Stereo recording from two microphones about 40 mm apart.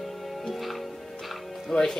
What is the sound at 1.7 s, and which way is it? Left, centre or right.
Speech, centre.